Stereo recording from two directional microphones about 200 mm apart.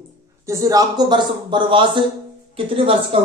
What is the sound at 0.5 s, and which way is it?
Speech, 15° right (ahead or behind).